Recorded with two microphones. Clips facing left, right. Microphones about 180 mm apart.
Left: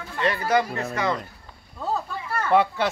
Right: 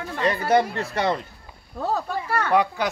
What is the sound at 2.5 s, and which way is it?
Speech, centre (ahead or behind).